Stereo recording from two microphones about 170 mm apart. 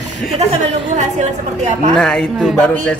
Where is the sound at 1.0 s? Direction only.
45° right (ahead or behind).